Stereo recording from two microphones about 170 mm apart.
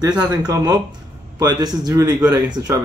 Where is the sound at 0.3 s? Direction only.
20° right (ahead or behind).